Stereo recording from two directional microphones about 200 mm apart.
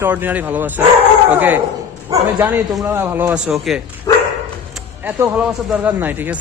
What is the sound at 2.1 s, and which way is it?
A man's voice, 10° right (ahead or behind).